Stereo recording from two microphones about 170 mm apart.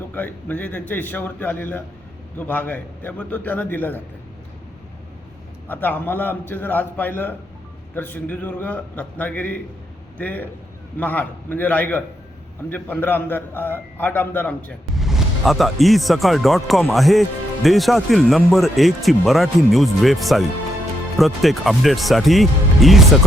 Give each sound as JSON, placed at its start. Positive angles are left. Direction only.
{"t": 0.1, "sound": "a man's voice", "side_deg": 10}
{"t": 5.6, "sound": "a man's voice", "side_deg": 10}